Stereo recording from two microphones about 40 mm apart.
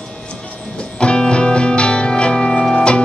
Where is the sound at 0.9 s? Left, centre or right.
Left.